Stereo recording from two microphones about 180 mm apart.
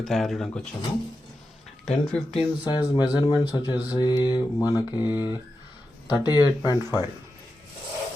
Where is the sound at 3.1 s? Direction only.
20° left (ahead or behind).